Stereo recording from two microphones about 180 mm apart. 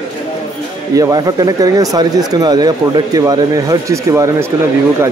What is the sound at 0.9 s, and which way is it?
Speech, 20° right (ahead or behind).